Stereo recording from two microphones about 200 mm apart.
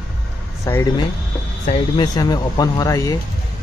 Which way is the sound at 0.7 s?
15° left (ahead or behind).